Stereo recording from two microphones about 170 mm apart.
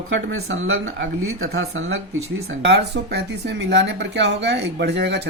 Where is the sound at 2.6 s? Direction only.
80° right.